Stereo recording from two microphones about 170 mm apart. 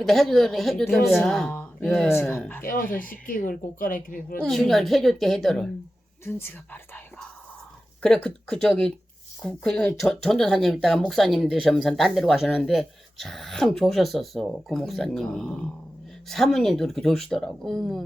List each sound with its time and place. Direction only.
0.0 s speech: centre (ahead or behind)
2.0 s speech: 15° left (ahead or behind)
2.6 s speech: 55° left (ahead or behind)
4.4 s speech: 5° left (ahead or behind)
6.2 s speech: 10° left (ahead or behind)